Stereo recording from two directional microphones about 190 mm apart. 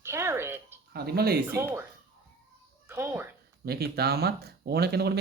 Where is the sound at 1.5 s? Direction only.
15° right (ahead or behind).